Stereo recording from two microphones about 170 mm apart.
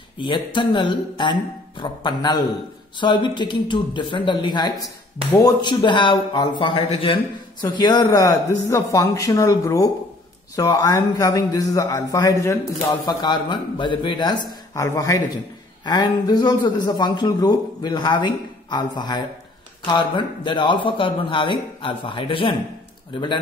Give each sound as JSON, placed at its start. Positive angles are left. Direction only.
{"t": 0.2, "sound": "a man's voice", "side_deg": 30}